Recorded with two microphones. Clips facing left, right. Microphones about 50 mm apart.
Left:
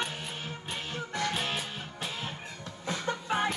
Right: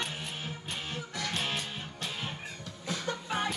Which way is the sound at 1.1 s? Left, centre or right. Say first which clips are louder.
Left 5 dB; centre.